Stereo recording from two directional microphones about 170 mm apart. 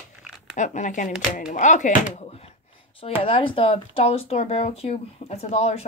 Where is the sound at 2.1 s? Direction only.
35° left (ahead or behind).